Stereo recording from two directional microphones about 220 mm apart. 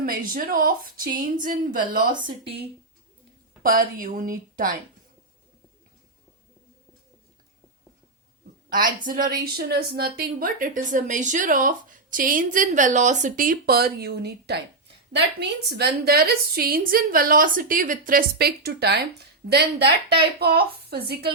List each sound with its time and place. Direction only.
0.0 s a woman's voice: 40° right (ahead or behind)
2.1 s speech: 20° right (ahead or behind)
3.6 s a woman's voice: 40° right (ahead or behind)
8.7 s a woman's voice: 40° right (ahead or behind)